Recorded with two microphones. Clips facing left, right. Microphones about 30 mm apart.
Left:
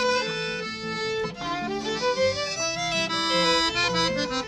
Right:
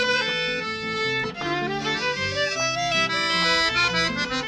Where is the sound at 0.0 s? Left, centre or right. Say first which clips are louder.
Right 2 dB; right.